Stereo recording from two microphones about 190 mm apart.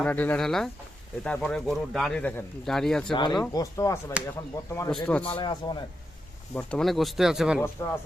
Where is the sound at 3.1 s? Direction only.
25° left (ahead or behind).